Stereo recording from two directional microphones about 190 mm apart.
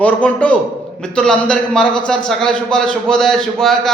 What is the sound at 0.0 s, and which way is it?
A man's voice, 5° left (ahead or behind).